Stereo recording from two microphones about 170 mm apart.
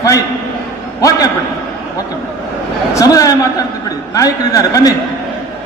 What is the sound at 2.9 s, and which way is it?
A man's voice, 20° left (ahead or behind).